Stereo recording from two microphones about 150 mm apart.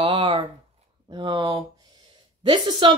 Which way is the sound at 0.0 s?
35° right (ahead or behind).